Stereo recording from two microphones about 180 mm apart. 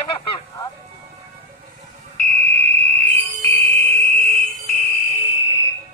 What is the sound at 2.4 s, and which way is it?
Fire alarm, 10° left (ahead or behind).